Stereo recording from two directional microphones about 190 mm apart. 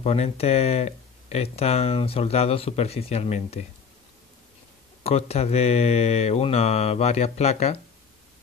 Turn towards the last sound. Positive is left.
turn(degrees=35)  # may be behind; listen again after turning